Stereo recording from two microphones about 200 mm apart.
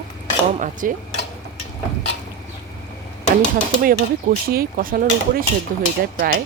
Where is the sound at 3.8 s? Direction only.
45° right (ahead or behind).